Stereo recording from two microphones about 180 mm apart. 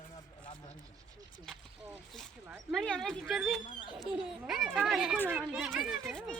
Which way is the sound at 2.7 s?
Centre (ahead or behind).